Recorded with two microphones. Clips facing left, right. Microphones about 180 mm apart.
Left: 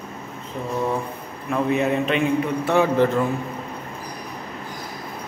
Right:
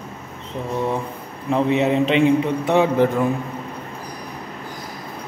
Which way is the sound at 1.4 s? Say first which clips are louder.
Right 3 dB; 25° right (ahead or behind).